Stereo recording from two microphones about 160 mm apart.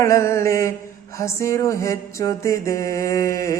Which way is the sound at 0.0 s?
15° left (ahead or behind).